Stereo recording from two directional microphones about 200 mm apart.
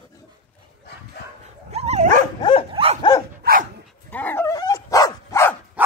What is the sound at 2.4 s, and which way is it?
Dog, 25° left (ahead or behind).